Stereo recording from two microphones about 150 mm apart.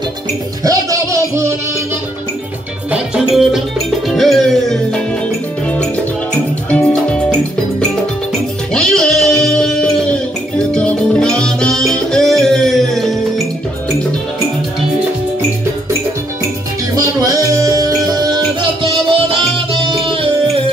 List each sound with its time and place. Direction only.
0.7 s music: 20° right (ahead or behind)
2.9 s music: 5° right (ahead or behind)
6.7 s music: 10° left (ahead or behind)
8.7 s music: 5° left (ahead or behind)
16.9 s music: 25° right (ahead or behind)